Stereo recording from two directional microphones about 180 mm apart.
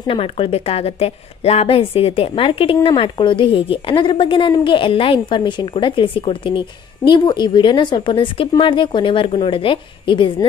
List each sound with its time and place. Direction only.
0.0 s a woman's voice: 30° left (ahead or behind)